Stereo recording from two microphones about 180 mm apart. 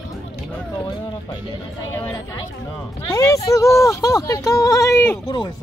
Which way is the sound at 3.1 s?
20° left (ahead or behind).